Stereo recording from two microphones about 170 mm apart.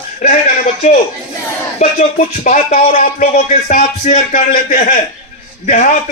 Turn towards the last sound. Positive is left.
turn(degrees=50)  # may be behind; listen again after turning